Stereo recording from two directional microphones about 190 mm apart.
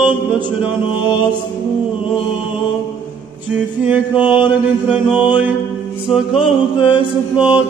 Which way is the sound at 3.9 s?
10° right (ahead or behind).